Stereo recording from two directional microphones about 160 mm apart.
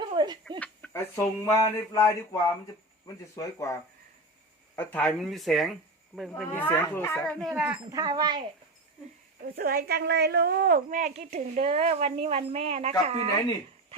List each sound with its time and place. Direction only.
0.0 s a sound: 30° right (ahead or behind)
0.6 s speech: 10° left (ahead or behind)
6.3 s speech: 10° left (ahead or behind)
7.3 s speech: centre (ahead or behind)
7.9 s speech: 25° right (ahead or behind)
9.6 s a woman's voice: 75° right (ahead or behind); by 12.9 s 35° right (ahead or behind)